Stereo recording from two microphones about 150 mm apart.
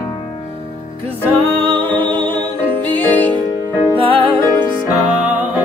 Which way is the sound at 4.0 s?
35° right (ahead or behind).